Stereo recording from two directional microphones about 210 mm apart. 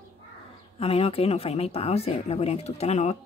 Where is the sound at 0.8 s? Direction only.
30° left (ahead or behind).